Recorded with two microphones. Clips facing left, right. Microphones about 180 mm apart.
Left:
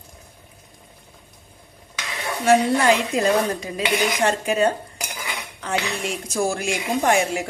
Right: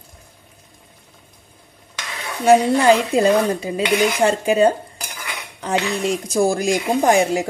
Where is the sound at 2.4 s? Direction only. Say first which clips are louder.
Right 4 dB; 35° right (ahead or behind).